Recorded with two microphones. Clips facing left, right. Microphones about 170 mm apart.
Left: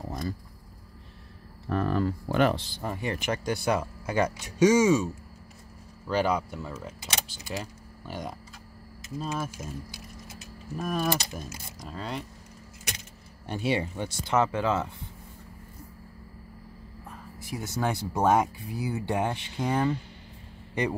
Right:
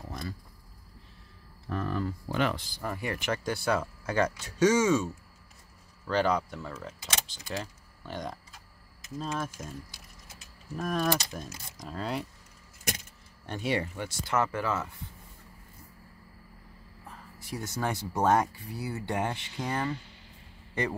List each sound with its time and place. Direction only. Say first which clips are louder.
1.7 s insect: left 5 dB; 65° left (ahead or behind)
2.5 s speech: left 3 dB; 25° left (ahead or behind); by 9.7 s 5° left (ahead or behind)
10.8 s speech: even; 5° left (ahead or behind)
13.6 s speech: left 3 dB; 25° left (ahead or behind)
17.6 s speech: left 3 dB; 10° left (ahead or behind)